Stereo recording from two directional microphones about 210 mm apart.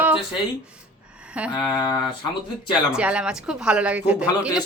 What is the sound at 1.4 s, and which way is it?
Speech, 5° right (ahead or behind).